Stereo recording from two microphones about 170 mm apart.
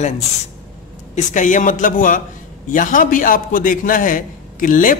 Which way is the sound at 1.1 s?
50° left (ahead or behind).